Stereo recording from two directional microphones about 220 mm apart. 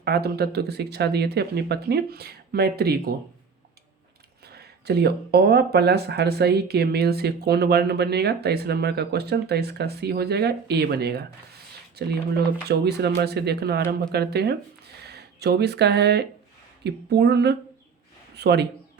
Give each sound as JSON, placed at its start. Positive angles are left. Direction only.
{"t": 0.0, "sound": "speech", "side_deg": -45}
{"t": 4.4, "sound": "speech", "side_deg": -45}